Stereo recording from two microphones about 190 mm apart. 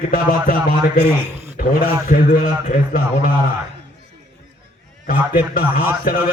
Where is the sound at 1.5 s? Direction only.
50° left (ahead or behind).